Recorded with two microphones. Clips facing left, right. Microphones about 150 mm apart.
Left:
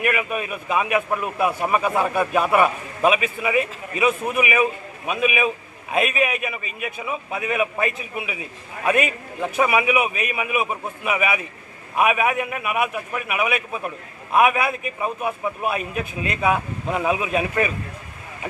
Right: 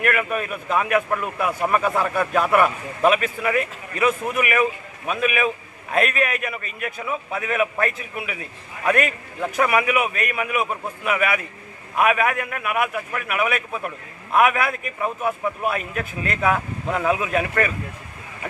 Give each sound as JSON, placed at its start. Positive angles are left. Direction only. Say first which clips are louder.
{"t": 0.0, "sound": "a man's voice", "louder": "right 1 dB", "side_deg": 10}